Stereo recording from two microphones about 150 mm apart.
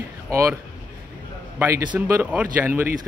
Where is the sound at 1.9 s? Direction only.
15° right (ahead or behind).